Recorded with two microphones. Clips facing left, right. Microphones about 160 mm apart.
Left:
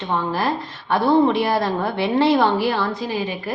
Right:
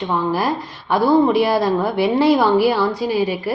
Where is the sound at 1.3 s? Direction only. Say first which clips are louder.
Right 4 dB; 10° right (ahead or behind).